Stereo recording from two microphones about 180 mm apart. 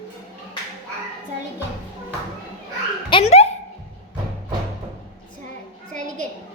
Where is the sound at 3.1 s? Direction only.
30° left (ahead or behind).